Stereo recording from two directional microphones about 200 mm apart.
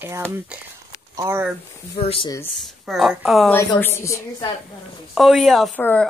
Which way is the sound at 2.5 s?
Centre (ahead or behind).